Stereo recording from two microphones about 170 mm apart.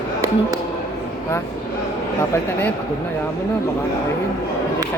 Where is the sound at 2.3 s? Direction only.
10° left (ahead or behind).